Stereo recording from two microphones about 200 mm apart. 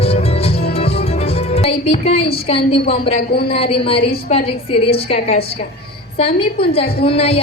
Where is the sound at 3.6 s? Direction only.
30° left (ahead or behind).